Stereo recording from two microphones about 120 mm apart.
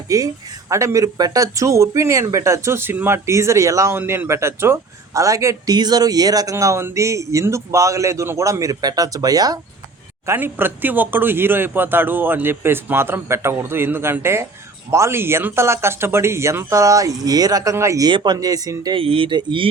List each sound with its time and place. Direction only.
0.1 s speech: 30° right (ahead or behind)
10.2 s speech: 20° right (ahead or behind)
18.1 s speech: 40° right (ahead or behind)
18.9 s speech: 50° right (ahead or behind)